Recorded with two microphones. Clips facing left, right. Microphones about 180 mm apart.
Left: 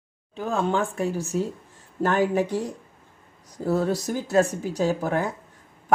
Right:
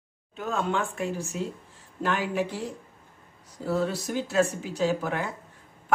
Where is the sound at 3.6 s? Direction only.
40° left (ahead or behind).